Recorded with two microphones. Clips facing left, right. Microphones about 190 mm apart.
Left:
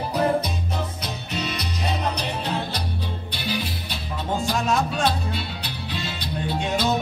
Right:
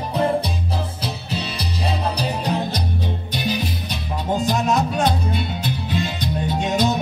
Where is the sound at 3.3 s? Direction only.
20° right (ahead or behind).